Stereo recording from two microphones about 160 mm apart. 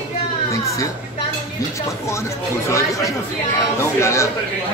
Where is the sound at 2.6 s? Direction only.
20° left (ahead or behind).